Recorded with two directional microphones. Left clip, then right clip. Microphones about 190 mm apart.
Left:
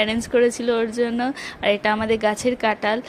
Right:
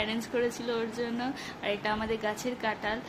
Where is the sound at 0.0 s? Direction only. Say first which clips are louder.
Left 12 dB; 40° left (ahead or behind).